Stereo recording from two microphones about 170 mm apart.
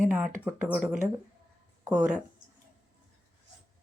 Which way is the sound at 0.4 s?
10° right (ahead or behind).